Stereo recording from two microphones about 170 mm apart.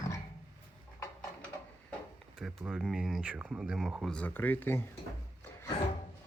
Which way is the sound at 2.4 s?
5° right (ahead or behind).